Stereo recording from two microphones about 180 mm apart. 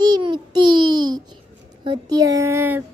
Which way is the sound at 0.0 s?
25° right (ahead or behind).